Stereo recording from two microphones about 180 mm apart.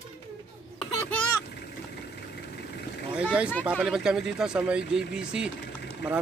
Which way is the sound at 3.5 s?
5° left (ahead or behind).